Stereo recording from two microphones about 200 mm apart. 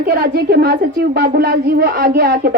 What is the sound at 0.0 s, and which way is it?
Speech, 50° right (ahead or behind).